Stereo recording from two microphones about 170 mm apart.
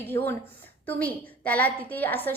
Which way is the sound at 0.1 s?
15° left (ahead or behind).